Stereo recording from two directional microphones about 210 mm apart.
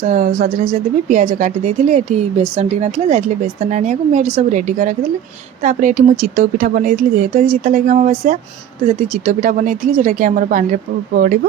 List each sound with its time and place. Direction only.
0.0 s speech: 35° right (ahead or behind)